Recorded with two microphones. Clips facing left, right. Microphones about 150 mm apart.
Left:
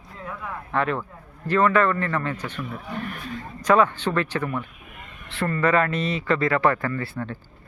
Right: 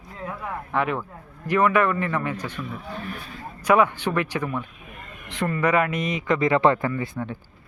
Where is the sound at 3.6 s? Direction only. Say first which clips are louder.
Even; 10° right (ahead or behind).